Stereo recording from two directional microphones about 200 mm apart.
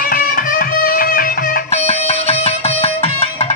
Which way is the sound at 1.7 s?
30° left (ahead or behind).